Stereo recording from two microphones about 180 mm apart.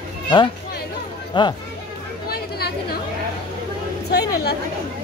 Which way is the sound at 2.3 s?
60° left (ahead or behind).